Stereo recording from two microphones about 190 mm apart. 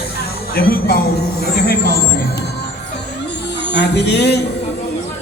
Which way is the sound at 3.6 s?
65° left (ahead or behind).